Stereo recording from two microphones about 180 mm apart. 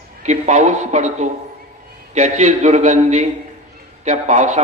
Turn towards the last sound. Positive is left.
turn(degrees=-40)  # may be behind; listen again after turning